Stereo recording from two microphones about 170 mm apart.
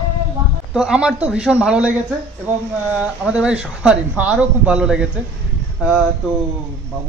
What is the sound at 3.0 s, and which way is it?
Speech, 5° right (ahead or behind).